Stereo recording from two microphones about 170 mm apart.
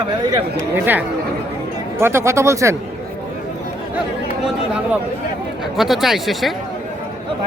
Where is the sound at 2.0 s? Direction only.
15° right (ahead or behind).